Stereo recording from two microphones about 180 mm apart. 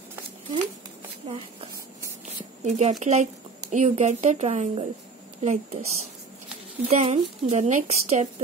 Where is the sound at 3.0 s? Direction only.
40° right (ahead or behind).